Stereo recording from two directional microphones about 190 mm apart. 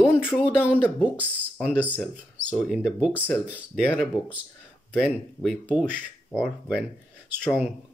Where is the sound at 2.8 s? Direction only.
5° right (ahead or behind).